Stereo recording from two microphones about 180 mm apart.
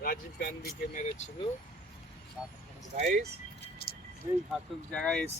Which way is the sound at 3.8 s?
60° left (ahead or behind).